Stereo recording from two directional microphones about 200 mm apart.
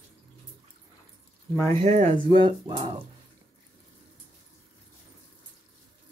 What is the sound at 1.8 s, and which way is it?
Speech, 30° right (ahead or behind).